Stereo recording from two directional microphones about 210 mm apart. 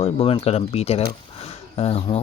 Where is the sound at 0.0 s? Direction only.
25° left (ahead or behind).